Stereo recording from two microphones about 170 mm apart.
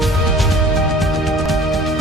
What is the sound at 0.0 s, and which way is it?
Music, centre (ahead or behind).